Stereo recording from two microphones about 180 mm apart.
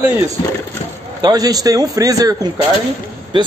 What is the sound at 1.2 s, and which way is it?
A man's voice, 20° right (ahead or behind).